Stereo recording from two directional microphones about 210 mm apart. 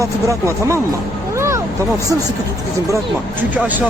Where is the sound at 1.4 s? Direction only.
15° right (ahead or behind).